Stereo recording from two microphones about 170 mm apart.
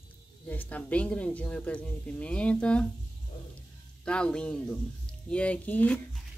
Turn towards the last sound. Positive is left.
turn(degrees=10)  # may be behind; listen again after turning